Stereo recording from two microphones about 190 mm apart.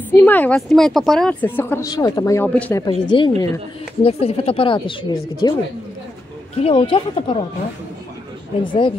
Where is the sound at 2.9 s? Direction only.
25° left (ahead or behind).